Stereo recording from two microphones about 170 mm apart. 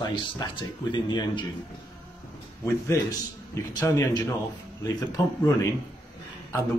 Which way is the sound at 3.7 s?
15° left (ahead or behind).